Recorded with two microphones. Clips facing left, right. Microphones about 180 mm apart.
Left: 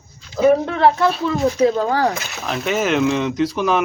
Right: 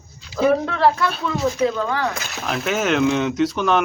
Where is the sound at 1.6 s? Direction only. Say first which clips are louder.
Left 7 dB; 35° left (ahead or behind).